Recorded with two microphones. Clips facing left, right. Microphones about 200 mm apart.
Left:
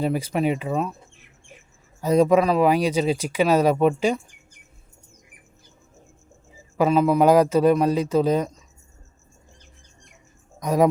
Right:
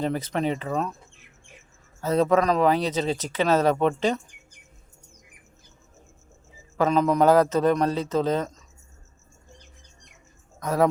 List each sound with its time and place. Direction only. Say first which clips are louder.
0.0 s speech: left 3 dB; 10° left (ahead or behind)
2.0 s speech: left 4 dB; 15° left (ahead or behind)
6.7 s speech: left 3 dB; 10° left (ahead or behind)
10.6 s speech: left 3 dB; 15° left (ahead or behind)